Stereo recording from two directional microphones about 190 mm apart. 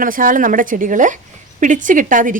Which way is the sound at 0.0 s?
45° right (ahead or behind).